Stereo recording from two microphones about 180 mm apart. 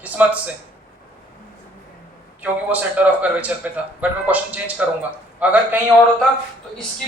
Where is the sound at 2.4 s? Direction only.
10° right (ahead or behind).